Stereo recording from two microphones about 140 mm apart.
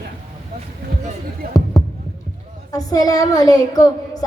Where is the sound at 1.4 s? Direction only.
90° right.